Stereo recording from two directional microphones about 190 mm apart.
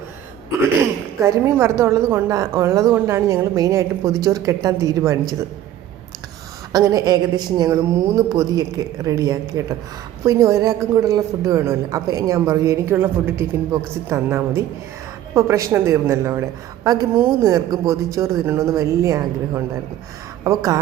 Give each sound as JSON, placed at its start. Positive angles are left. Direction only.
{"t": 1.2, "sound": "a woman's voice", "side_deg": -15}
{"t": 6.7, "sound": "a woman's voice", "side_deg": -20}